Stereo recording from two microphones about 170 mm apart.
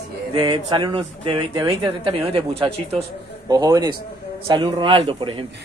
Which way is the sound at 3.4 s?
20° right (ahead or behind).